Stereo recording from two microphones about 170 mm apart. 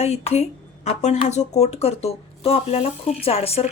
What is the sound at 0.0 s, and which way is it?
Speech, 40° left (ahead or behind).